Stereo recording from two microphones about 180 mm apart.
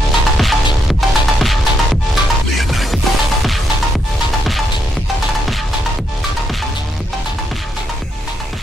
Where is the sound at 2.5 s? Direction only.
Centre (ahead or behind).